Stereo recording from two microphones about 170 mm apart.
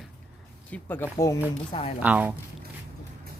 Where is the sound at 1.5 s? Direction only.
30° left (ahead or behind).